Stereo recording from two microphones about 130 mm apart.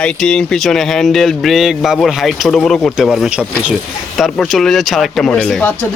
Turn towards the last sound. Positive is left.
turn(degrees=10)  # may be behind; listen again after turning